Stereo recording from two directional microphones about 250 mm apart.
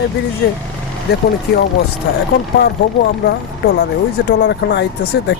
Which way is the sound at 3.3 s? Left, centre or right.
Left.